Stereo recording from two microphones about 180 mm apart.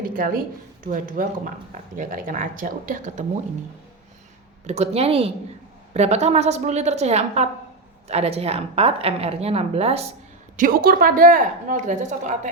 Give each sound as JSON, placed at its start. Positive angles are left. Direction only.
{"t": 0.0, "sound": "speech", "side_deg": -50}
{"t": 4.6, "sound": "speech", "side_deg": -35}
{"t": 10.6, "sound": "speech", "side_deg": -50}